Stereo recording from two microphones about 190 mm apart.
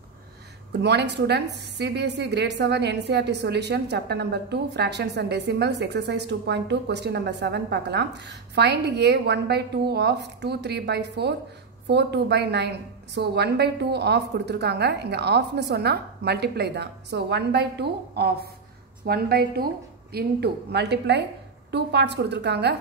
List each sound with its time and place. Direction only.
0.7 s a woman's voice: 60° right (ahead or behind)